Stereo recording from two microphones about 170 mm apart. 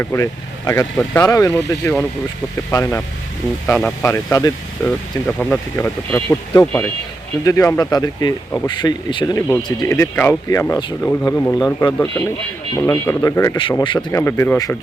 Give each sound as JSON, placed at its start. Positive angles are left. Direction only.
{"t": 0.0, "sound": "speech", "side_deg": 15}
{"t": 13.6, "sound": "speech", "side_deg": 30}
{"t": 14.1, "sound": "speech", "side_deg": 15}